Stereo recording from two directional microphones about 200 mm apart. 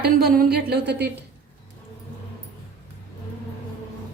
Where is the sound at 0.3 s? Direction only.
50° right (ahead or behind).